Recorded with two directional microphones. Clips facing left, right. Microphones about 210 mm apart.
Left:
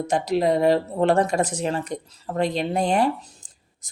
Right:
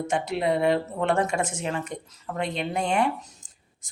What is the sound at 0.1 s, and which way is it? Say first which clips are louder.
Speech: left 5 dB; 35° left (ahead or behind).